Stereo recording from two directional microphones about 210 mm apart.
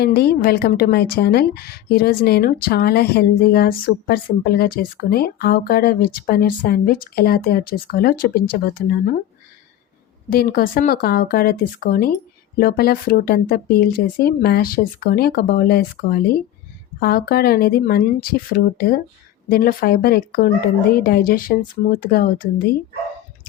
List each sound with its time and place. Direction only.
0.0 s a woman's voice: 50° left (ahead or behind)
10.2 s a woman's voice: 45° left (ahead or behind)